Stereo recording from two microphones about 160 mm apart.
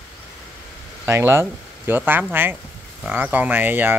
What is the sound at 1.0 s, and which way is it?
Speech, 15° right (ahead or behind).